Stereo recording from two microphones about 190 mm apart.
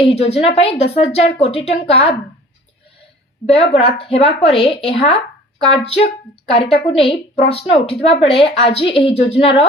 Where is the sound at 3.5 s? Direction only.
30° left (ahead or behind).